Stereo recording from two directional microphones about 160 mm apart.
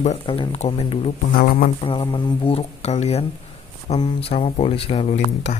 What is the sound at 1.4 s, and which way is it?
Speech, 60° left (ahead or behind).